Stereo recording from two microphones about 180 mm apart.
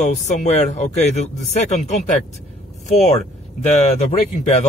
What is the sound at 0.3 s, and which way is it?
Speech, 40° left (ahead or behind).